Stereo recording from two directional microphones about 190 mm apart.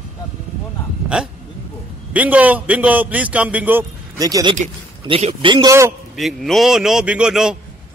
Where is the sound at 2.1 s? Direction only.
10° right (ahead or behind).